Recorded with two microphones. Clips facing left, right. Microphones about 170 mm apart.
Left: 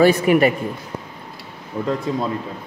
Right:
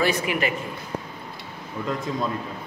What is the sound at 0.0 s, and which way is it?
Speech, 40° left (ahead or behind).